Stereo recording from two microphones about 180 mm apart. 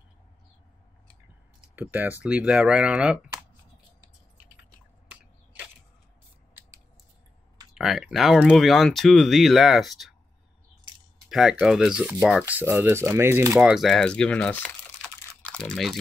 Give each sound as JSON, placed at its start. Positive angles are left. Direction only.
{"t": 1.8, "sound": "speech", "side_deg": -10}
{"t": 5.1, "sound": "a sound", "side_deg": -5}
{"t": 7.7, "sound": "speech", "side_deg": 0}
{"t": 11.2, "sound": "speech", "side_deg": -5}
{"t": 13.6, "sound": "speech", "side_deg": -5}